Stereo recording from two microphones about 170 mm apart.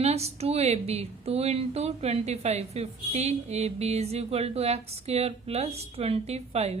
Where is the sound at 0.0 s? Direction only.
40° right (ahead or behind).